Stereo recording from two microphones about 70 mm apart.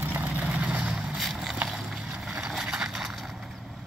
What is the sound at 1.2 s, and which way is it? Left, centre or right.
Vehicle, centre.